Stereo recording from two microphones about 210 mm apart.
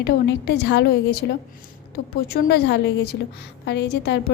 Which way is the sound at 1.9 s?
45° left (ahead or behind).